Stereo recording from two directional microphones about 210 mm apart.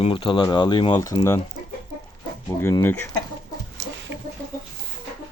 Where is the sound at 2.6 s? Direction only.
10° left (ahead or behind).